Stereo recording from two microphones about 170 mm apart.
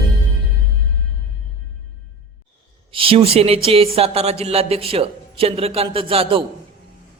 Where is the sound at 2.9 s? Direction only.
35° right (ahead or behind).